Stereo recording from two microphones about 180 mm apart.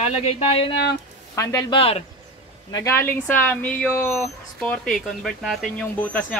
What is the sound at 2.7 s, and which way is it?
Speech, 15° left (ahead or behind).